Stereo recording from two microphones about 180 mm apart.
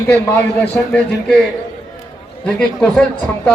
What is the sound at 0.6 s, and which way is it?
Speech, 5° left (ahead or behind).